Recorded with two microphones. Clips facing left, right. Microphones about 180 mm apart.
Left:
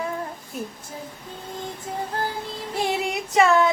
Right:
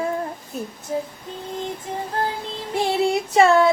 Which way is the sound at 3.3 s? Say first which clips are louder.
Right 2 dB; 30° right (ahead or behind).